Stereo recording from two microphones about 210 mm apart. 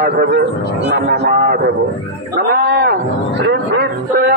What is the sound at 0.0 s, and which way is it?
A man's voice, 50° right (ahead or behind).